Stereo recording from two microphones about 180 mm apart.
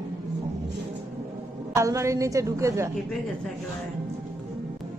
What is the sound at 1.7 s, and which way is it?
A woman's voice, 15° right (ahead or behind).